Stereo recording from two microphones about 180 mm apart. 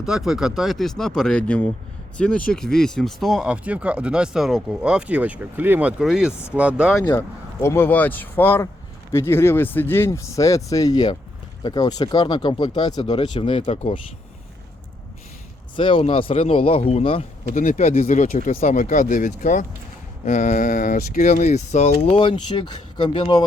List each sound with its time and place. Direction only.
0.0 s speech: centre (ahead or behind)
7.0 s speech: 15° left (ahead or behind); by 14.0 s 35° left (ahead or behind)
15.7 s speech: 30° left (ahead or behind)
17.5 s speech: 40° left (ahead or behind); by 23.4 s 25° left (ahead or behind)